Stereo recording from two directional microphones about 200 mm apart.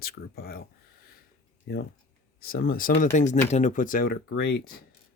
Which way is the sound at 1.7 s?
55° left (ahead or behind).